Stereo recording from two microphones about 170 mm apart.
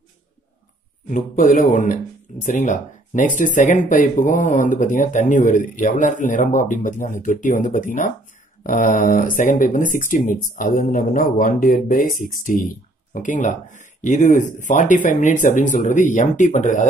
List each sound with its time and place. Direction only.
1.0 s speech: 50° left (ahead or behind)